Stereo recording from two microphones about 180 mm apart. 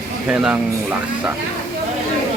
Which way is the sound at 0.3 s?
5° right (ahead or behind).